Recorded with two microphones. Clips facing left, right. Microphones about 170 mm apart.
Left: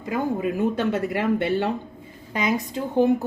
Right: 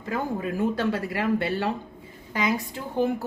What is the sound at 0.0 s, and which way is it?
A woman's voice, 20° left (ahead or behind).